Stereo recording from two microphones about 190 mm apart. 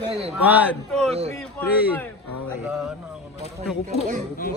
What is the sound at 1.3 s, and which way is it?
Speech, 10° left (ahead or behind).